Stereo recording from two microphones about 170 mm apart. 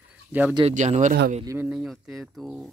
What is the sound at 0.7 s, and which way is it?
Speech, 40° right (ahead or behind).